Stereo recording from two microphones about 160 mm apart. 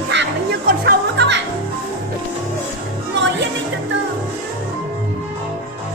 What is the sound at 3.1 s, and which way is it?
Music, 90° right.